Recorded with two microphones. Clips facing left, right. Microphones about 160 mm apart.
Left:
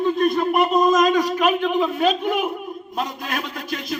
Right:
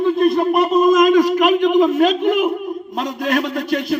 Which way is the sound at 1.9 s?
90° right.